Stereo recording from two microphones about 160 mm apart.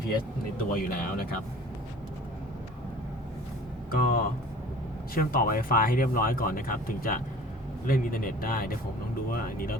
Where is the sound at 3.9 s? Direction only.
65° left (ahead or behind).